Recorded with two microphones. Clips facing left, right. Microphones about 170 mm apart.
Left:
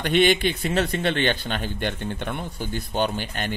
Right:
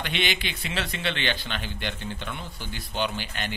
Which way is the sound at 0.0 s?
50° left (ahead or behind).